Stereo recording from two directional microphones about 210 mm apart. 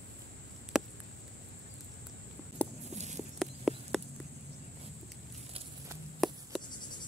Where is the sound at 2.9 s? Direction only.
35° right (ahead or behind).